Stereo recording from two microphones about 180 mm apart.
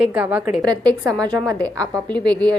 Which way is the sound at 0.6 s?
25° right (ahead or behind).